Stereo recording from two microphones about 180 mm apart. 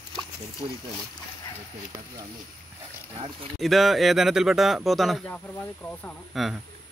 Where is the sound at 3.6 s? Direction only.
Centre (ahead or behind).